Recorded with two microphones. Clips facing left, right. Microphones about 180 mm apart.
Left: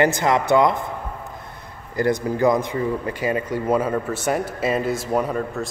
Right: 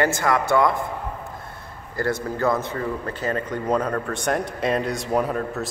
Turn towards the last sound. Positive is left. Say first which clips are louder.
# left 1 dB
turn(degrees=0)  # may be behind; listen again after turning